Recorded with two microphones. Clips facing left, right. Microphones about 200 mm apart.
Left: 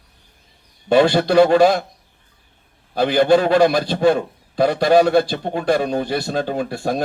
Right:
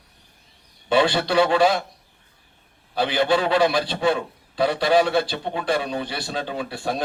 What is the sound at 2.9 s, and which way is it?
A man's voice, 45° left (ahead or behind).